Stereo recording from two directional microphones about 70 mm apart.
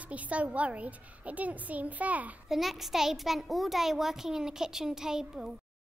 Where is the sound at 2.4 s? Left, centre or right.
Centre.